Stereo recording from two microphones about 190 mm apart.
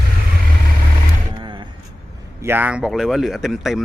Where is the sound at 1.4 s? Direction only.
25° right (ahead or behind).